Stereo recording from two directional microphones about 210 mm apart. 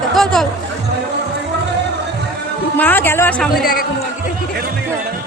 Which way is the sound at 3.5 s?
45° left (ahead or behind).